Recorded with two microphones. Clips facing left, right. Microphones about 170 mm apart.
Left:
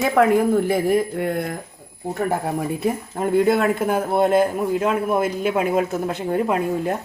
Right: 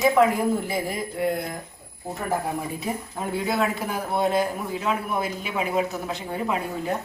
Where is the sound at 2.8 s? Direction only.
55° left (ahead or behind).